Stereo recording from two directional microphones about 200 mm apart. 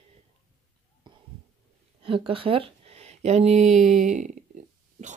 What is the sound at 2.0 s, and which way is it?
A woman's voice, 25° right (ahead or behind).